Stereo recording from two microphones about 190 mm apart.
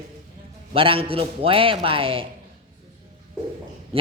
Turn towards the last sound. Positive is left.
turn(degrees=-30)  # may be behind; listen again after turning